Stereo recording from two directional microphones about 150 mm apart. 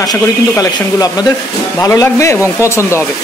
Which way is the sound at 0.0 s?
25° left (ahead or behind).